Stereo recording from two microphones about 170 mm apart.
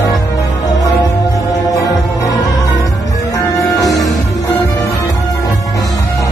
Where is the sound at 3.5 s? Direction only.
20° left (ahead or behind).